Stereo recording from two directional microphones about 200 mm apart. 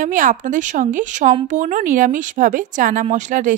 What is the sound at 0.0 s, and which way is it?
Speech, 40° right (ahead or behind).